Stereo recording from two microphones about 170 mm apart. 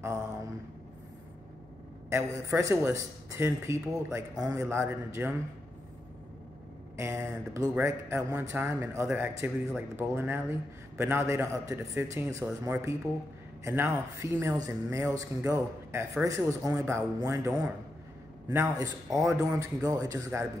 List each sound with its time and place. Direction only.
2.0 s a man's voice: 15° right (ahead or behind)
7.0 s a man's voice: 15° right (ahead or behind)